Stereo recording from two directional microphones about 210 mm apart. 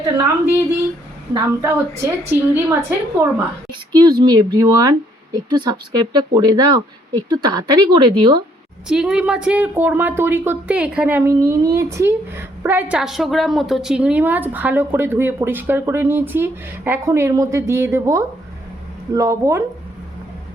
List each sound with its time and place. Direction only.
1.4 s speech: 15° right (ahead or behind)
8.9 s speech: 5° right (ahead or behind)